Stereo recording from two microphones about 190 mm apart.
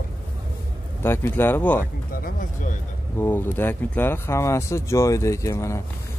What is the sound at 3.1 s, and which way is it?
Speech, 10° left (ahead or behind).